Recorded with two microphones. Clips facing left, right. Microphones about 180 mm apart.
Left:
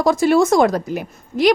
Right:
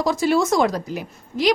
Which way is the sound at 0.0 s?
50° left (ahead or behind).